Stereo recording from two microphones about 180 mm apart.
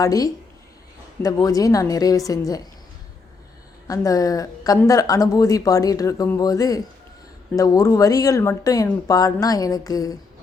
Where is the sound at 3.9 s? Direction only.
20° left (ahead or behind).